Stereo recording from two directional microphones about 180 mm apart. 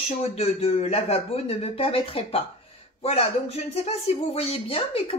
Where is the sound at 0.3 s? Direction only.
35° left (ahead or behind).